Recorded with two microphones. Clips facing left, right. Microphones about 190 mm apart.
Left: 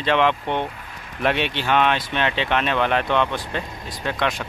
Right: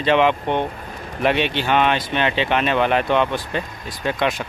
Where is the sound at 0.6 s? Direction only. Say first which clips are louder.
Right 4 dB; 40° right (ahead or behind).